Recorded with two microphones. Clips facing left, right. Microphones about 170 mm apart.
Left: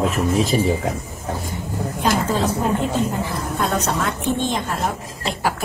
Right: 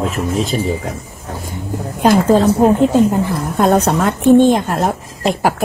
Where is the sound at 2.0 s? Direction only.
50° right (ahead or behind).